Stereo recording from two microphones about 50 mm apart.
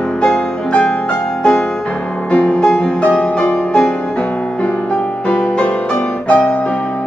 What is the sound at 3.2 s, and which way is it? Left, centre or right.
Music, left.